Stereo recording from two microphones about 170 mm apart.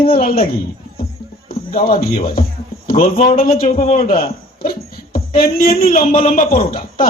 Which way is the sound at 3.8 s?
35° left (ahead or behind).